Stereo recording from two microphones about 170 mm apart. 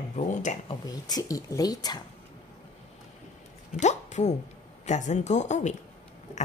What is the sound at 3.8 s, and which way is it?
A woman's voice, 45° left (ahead or behind).